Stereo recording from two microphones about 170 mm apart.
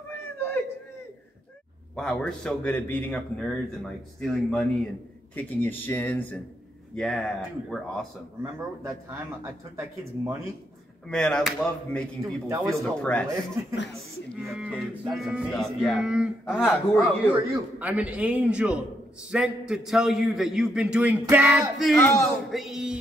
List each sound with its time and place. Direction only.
0.1 s a sound: 10° left (ahead or behind)
2.0 s a man's voice: 5° left (ahead or behind)
8.4 s speech: 15° right (ahead or behind)
11.1 s a man's voice: 5° left (ahead or behind)
14.3 s a man's voice: centre (ahead or behind)
21.9 s speech: 15° left (ahead or behind)
22.5 s music: centre (ahead or behind)